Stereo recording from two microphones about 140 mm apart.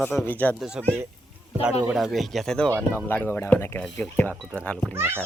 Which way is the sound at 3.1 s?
15° left (ahead or behind).